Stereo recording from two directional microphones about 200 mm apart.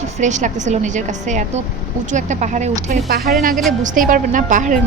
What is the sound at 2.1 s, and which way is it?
Speech, 40° right (ahead or behind).